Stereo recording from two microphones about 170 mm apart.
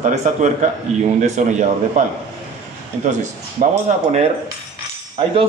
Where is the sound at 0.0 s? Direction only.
45° right (ahead or behind).